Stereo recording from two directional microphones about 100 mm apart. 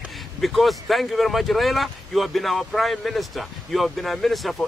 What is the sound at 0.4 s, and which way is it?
Speech, centre (ahead or behind).